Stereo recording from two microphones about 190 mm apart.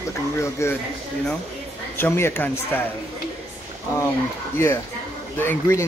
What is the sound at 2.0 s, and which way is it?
Speech, 10° left (ahead or behind).